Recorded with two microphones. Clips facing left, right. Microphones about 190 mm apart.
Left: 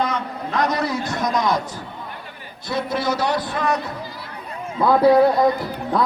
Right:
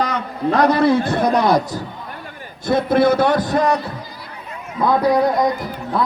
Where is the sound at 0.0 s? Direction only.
35° right (ahead or behind).